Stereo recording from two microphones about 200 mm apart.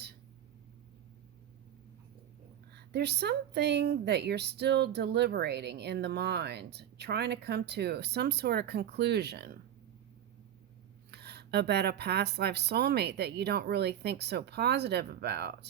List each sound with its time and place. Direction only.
2.7 s speech: 55° right (ahead or behind)
11.1 s speech: 55° right (ahead or behind)